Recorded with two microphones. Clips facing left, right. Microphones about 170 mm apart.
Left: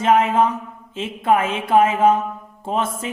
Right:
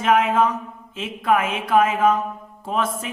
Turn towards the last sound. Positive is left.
turn(degrees=25)  # may be behind; listen again after turning